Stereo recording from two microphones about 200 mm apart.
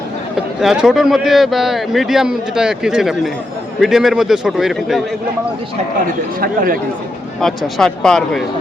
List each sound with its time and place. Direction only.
0.3 s speech: 5° right (ahead or behind)
6.4 s speech: 45° right (ahead or behind)
7.4 s speech: centre (ahead or behind)